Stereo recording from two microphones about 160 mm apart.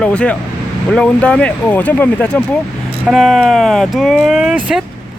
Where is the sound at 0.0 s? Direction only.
5° left (ahead or behind).